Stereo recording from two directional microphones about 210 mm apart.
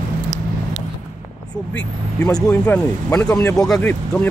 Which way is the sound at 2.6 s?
10° left (ahead or behind).